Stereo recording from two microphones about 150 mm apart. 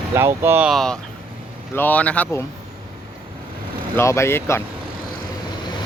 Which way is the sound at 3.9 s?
20° left (ahead or behind).